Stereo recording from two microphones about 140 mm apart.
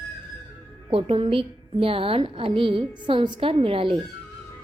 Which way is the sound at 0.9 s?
40° right (ahead or behind).